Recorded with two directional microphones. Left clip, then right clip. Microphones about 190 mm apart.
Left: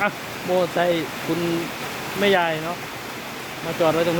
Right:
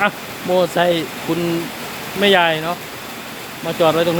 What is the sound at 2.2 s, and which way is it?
Speech, 10° right (ahead or behind).